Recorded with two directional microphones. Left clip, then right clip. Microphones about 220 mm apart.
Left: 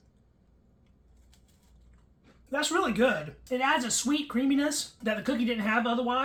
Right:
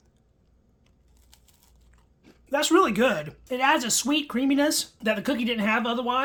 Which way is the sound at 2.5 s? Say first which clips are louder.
Right 7 dB; 50° right (ahead or behind).